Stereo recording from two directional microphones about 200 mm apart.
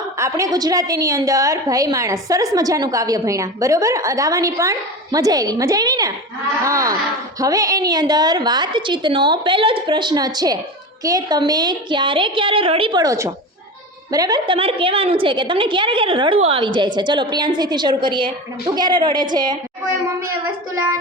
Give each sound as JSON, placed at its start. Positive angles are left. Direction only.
{"t": 0.2, "sound": "a woman's voice", "side_deg": -15}